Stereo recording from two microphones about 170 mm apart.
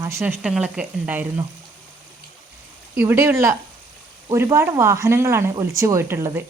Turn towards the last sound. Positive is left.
turn(degrees=-15)  # may be behind; listen again after turning